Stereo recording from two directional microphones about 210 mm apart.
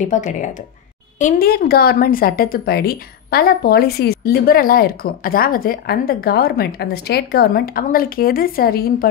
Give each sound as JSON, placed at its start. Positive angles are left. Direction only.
{"t": 0.1, "sound": "a woman's voice", "side_deg": 35}